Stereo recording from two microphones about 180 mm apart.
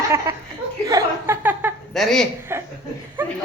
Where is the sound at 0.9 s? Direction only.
15° right (ahead or behind).